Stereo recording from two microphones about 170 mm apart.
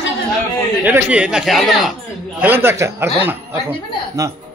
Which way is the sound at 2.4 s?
10° right (ahead or behind).